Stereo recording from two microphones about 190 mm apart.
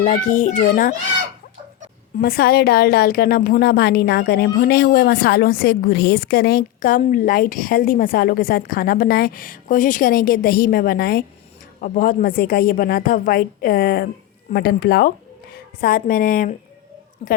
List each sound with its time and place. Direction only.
0.0 s a child's voice: 45° left (ahead or behind)
2.1 s a woman's voice: 50° left (ahead or behind)
17.2 s a child's voice: 35° left (ahead or behind)